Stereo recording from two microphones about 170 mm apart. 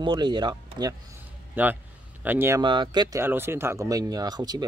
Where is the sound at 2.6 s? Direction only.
25° right (ahead or behind).